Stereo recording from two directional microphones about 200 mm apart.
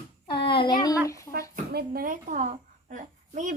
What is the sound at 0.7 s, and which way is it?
Speech, 20° left (ahead or behind).